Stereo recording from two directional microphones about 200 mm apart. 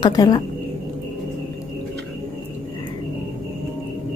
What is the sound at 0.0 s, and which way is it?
Speech, 20° left (ahead or behind).